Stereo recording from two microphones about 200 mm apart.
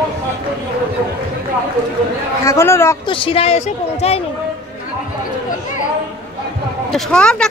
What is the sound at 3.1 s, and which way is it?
Speech, 25° left (ahead or behind).